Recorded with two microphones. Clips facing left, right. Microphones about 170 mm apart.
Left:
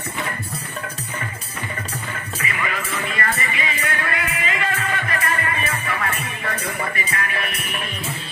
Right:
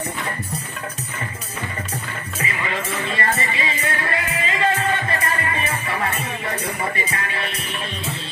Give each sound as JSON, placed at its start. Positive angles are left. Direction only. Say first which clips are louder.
{"t": 2.4, "sound": "music", "louder": "right 1 dB", "side_deg": -25}
{"t": 7.2, "sound": "music", "louder": "even", "side_deg": -30}